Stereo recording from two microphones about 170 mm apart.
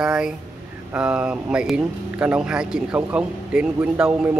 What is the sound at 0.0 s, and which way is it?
Speech, 5° right (ahead or behind).